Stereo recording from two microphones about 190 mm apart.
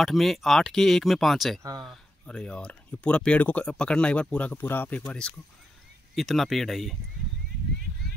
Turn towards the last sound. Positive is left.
turn(degrees=0)  # may be behind; listen again after turning